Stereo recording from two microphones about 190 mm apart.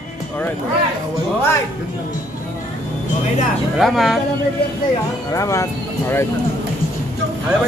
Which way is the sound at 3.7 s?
Centre (ahead or behind).